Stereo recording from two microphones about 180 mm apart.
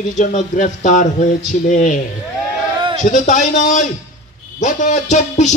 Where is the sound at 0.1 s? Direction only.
45° left (ahead or behind).